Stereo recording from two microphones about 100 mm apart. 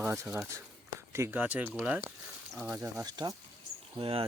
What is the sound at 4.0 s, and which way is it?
Speech, 70° right (ahead or behind).